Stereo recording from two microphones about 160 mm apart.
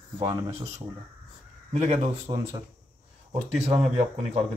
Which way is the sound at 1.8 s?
45° right (ahead or behind).